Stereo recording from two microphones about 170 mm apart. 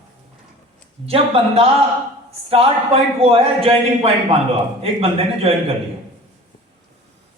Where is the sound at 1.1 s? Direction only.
35° right (ahead or behind).